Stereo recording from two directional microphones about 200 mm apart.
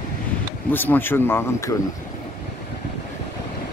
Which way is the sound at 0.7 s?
10° left (ahead or behind).